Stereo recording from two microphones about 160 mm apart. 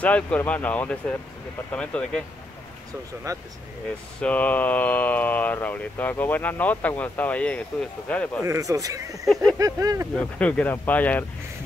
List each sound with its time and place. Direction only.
0.0 s speech: 10° left (ahead or behind)
3.3 s speech: 20° right (ahead or behind)
4.2 s speech: 10° left (ahead or behind)
8.5 s speech: 20° right (ahead or behind)
9.2 s a sound: centre (ahead or behind)
9.6 s speech: 20° right (ahead or behind)
10.1 s speech: 5° left (ahead or behind)